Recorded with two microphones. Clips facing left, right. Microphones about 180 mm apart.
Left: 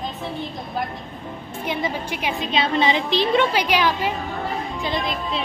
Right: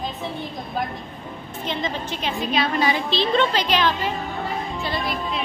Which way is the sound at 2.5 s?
25° left (ahead or behind).